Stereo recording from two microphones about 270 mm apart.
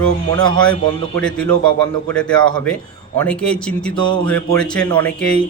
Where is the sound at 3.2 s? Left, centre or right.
Centre.